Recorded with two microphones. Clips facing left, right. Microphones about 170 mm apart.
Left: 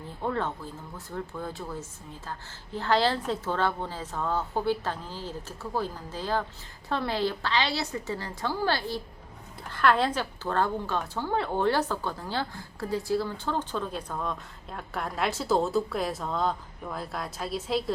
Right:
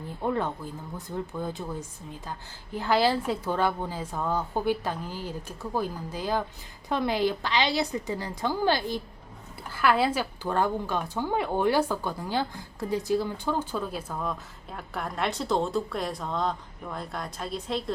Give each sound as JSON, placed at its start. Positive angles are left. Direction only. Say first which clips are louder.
{"t": 0.2, "sound": "speech", "louder": "right 2 dB", "side_deg": -15}
{"t": 9.6, "sound": "speech", "louder": "even", "side_deg": -5}